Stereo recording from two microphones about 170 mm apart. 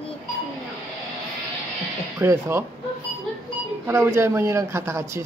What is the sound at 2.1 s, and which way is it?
Speech, 15° right (ahead or behind).